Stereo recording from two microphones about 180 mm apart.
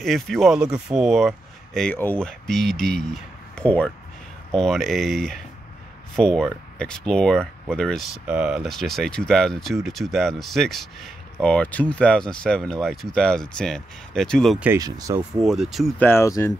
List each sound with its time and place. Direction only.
0.0 s speech: centre (ahead or behind)
14.6 s speech: 15° right (ahead or behind)
15.4 s speech: centre (ahead or behind)
16.0 s speech: 15° left (ahead or behind)